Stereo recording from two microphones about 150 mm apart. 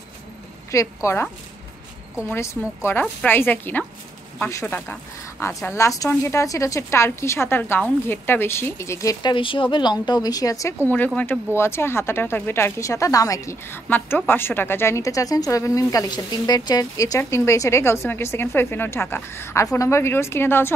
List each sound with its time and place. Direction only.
0.7 s a woman's voice: 20° left (ahead or behind)
2.3 s a woman's voice: 15° left (ahead or behind)